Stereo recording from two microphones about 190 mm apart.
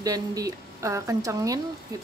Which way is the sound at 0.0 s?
20° right (ahead or behind).